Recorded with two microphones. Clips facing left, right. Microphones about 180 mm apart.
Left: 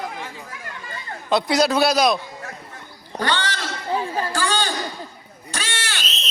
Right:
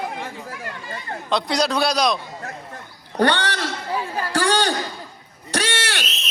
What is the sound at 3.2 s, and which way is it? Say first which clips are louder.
A man's voice: right 5 dB; 60° right (ahead or behind).